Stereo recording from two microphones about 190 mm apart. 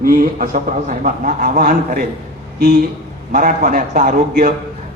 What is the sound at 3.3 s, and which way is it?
A man's voice, 45° right (ahead or behind).